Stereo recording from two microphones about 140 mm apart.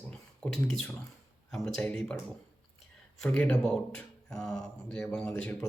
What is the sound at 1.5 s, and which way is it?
Speech, 5° left (ahead or behind).